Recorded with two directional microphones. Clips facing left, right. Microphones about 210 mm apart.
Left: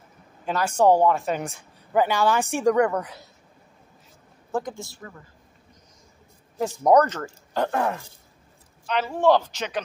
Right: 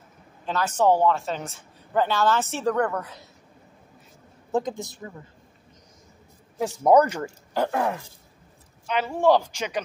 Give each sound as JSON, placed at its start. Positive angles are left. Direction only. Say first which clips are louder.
{"t": 0.5, "sound": "speech", "louder": "left 2 dB", "side_deg": 10}
{"t": 4.5, "sound": "speech", "louder": "right 3 dB", "side_deg": -20}
{"t": 6.6, "sound": "speech", "louder": "even", "side_deg": -5}